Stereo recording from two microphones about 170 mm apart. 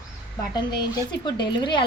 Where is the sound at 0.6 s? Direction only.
25° left (ahead or behind).